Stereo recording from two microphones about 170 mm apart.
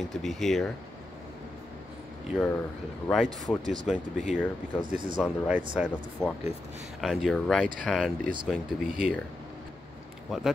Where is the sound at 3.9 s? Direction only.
Centre (ahead or behind).